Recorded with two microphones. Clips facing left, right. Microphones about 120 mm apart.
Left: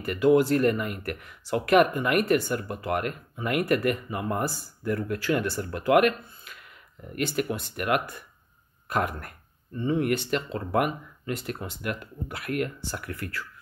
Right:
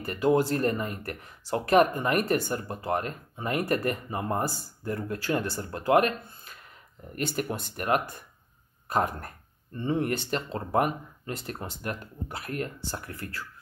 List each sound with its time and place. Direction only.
0.0 s speech: 35° right (ahead or behind)